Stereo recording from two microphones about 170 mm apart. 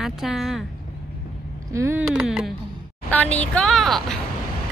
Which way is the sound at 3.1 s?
10° left (ahead or behind).